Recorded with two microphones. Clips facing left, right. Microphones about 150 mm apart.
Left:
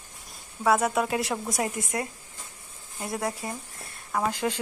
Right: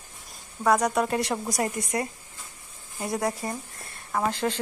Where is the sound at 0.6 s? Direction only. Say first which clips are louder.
Right 1 dB; 5° left (ahead or behind).